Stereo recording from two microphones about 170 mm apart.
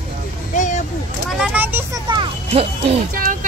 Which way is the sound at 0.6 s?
45° left (ahead or behind).